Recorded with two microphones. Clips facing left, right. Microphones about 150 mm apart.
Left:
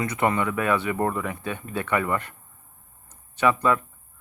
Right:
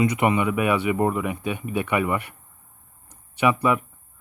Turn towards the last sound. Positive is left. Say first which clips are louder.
# right 1 dB
turn(degrees=-15)  # may be behind; listen again after turning